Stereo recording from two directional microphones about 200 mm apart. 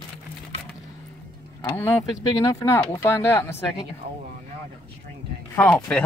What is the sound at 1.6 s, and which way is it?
Speech, 15° left (ahead or behind).